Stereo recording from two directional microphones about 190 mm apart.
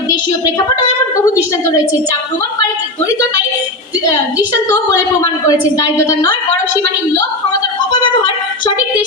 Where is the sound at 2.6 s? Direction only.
20° left (ahead or behind).